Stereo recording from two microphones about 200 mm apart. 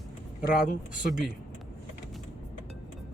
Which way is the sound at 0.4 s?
45° left (ahead or behind).